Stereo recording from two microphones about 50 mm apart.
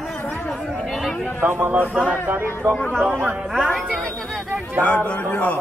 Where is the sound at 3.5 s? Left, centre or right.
Centre.